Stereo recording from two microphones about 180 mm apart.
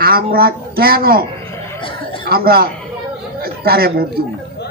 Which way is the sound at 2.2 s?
60° right (ahead or behind).